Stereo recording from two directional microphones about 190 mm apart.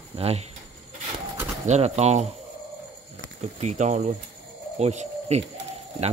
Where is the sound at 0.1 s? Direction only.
35° right (ahead or behind).